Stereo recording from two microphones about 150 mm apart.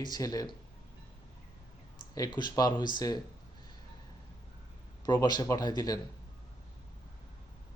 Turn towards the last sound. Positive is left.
turn(degrees=25)  # may be behind; listen again after turning